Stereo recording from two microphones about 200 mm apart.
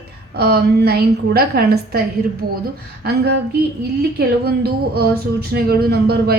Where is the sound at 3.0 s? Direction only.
50° right (ahead or behind).